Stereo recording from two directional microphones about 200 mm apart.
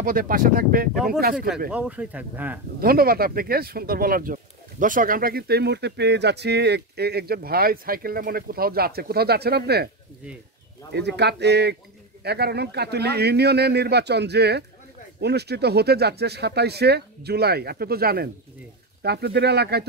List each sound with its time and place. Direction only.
0.0 s speech: 45° right (ahead or behind)
1.7 s speech: 5° right (ahead or behind)
2.8 s speech: 50° right (ahead or behind)
10.9 s speech: 55° right (ahead or behind)